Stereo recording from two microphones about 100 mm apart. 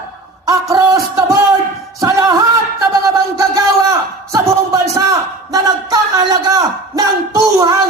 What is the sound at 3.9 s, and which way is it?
A man's voice, 35° right (ahead or behind).